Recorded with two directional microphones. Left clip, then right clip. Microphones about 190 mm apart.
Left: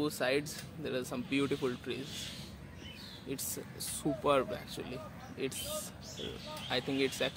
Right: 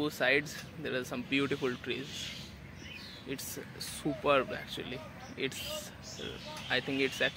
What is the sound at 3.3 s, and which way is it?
Speech, centre (ahead or behind).